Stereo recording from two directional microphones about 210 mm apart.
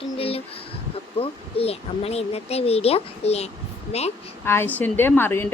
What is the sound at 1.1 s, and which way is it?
A child's voice, 25° left (ahead or behind).